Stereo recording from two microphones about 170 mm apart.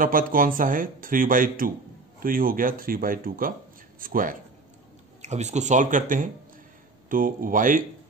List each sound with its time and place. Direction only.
0.0 s speech: 55° right (ahead or behind)
5.2 s speech: 40° right (ahead or behind)